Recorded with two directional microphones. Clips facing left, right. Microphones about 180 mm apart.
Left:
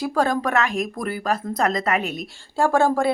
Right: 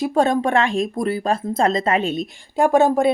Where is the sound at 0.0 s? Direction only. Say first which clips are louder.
Right 4 dB; 25° right (ahead or behind).